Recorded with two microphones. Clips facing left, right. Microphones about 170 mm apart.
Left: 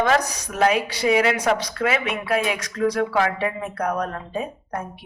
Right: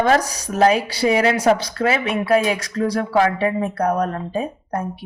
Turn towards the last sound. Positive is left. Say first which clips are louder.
# right 5 dB
turn(degrees=-30)  # may be behind; listen again after turning